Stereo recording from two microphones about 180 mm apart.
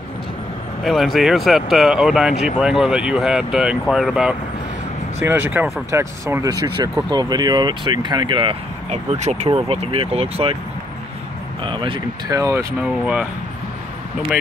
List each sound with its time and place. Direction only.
0.8 s speech: centre (ahead or behind); by 10.6 s 30° right (ahead or behind)
11.6 s speech: 30° right (ahead or behind)
13.0 s speech: 5° right (ahead or behind)